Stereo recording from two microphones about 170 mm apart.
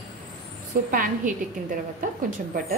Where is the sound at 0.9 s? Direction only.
55° right (ahead or behind).